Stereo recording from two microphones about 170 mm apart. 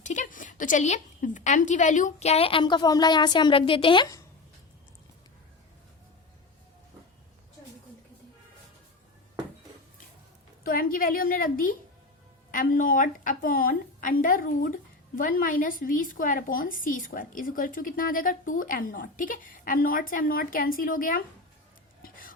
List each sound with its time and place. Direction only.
0.0 s a woman's voice: 45° left (ahead or behind); by 4.2 s 25° left (ahead or behind)
10.6 s a woman's voice: 60° left (ahead or behind)